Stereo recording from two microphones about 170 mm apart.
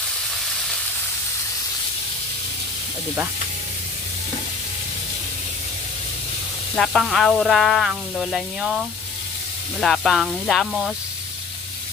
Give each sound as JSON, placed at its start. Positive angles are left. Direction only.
{"t": 6.7, "sound": "sizzle", "side_deg": 0}